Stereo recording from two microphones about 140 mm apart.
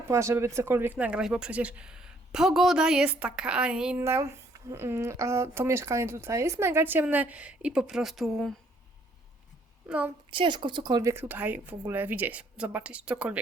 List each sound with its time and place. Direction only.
0.1 s speech: 20° right (ahead or behind)
4.0 s speech: 20° right (ahead or behind); by 8.5 s centre (ahead or behind)
9.8 s a woman's voice: 10° right (ahead or behind)
10.3 s speech: 35° right (ahead or behind)
11.1 s speech: 15° right (ahead or behind)